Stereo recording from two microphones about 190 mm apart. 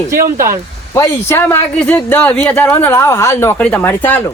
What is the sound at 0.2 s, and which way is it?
Speech, 50° right (ahead or behind).